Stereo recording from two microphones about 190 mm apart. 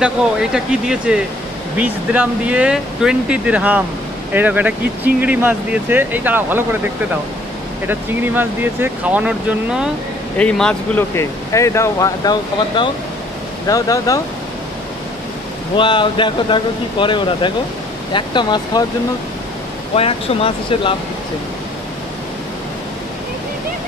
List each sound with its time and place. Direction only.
0.0 s speech: 5° right (ahead or behind)
7.8 s speech: 10° right (ahead or behind)
10.3 s speech: 5° left (ahead or behind)
15.7 s speech: 25° left (ahead or behind)
20.0 s speech: 30° left (ahead or behind)